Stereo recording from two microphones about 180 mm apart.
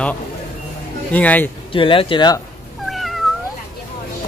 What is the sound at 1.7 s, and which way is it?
Speech, 30° left (ahead or behind).